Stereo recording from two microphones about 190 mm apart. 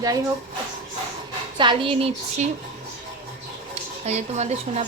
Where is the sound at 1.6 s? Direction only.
25° right (ahead or behind).